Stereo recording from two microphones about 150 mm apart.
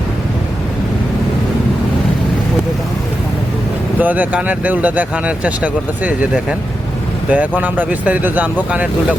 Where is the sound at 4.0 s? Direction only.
10° right (ahead or behind).